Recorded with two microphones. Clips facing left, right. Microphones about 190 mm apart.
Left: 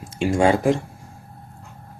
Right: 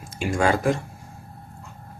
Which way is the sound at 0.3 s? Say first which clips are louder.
Left 3 dB; 25° left (ahead or behind).